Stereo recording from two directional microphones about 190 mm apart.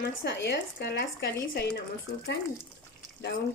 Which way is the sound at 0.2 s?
65° left (ahead or behind).